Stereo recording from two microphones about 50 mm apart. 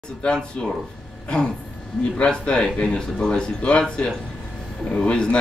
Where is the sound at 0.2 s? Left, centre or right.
Centre.